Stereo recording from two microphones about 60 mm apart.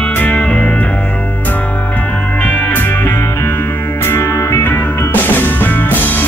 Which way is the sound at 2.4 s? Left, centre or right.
Left.